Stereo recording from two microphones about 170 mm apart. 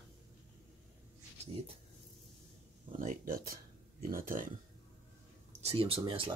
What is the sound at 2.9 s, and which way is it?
Speech, 55° right (ahead or behind).